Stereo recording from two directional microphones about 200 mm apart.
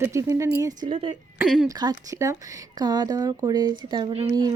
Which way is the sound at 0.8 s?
25° right (ahead or behind).